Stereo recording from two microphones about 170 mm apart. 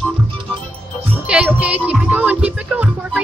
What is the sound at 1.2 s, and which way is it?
Music, 5° right (ahead or behind).